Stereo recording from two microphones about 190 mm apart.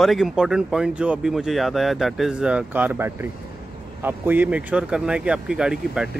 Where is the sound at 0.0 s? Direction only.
Centre (ahead or behind).